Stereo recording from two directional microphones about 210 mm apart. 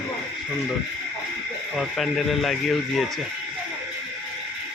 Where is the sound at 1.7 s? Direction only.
Centre (ahead or behind).